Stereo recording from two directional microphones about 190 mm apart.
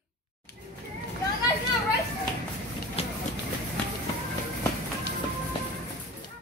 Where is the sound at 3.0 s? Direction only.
30° left (ahead or behind).